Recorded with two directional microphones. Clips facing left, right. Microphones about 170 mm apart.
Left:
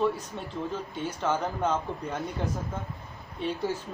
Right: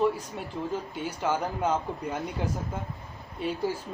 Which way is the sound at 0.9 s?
10° right (ahead or behind).